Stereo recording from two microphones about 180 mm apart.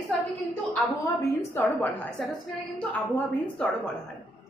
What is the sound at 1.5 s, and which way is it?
A woman's voice, 10° left (ahead or behind).